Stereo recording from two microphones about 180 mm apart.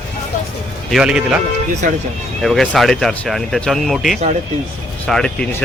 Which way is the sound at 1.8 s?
45° right (ahead or behind).